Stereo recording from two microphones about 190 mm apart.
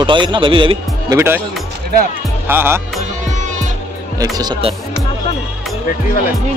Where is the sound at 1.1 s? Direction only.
10° right (ahead or behind).